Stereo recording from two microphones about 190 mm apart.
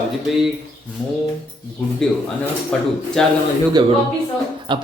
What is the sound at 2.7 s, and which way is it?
Speech, 5° left (ahead or behind).